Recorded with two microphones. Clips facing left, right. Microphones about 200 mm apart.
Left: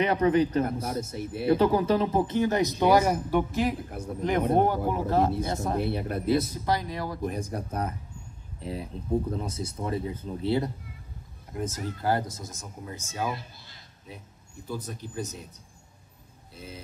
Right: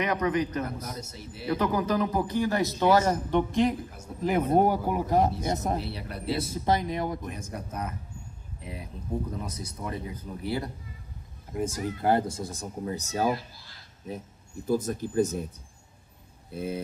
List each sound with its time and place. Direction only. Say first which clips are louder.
0.0 s speech: left 4 dB; 30° left (ahead or behind)
1.1 s speech: left 9 dB; 55° left (ahead or behind)
1.5 s speech: left 4 dB; 30° left (ahead or behind); by 3.7 s 5° left (ahead or behind)
4.2 s speech: right 1 dB; 5° right (ahead or behind)
5.8 s speech: left 7 dB; 50° left (ahead or behind)
6.6 s speech: right 2 dB; 20° right (ahead or behind)
7.2 s speech: left 5 dB; 35° left (ahead or behind)
11.5 s speech: right 3 dB; 10° right (ahead or behind)
12.1 s speech: right 3 dB; 30° right (ahead or behind)
14.7 s speech: right 9 dB; 45° right (ahead or behind)
16.5 s speech: right 11 dB; 55° right (ahead or behind)